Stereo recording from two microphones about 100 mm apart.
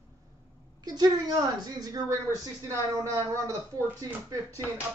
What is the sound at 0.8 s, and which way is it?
Speech, 40° right (ahead or behind).